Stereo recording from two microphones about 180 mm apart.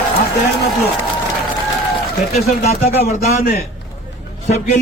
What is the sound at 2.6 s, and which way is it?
Speech, 35° left (ahead or behind).